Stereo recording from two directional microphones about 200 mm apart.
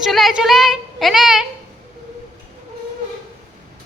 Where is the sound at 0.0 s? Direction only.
Centre (ahead or behind).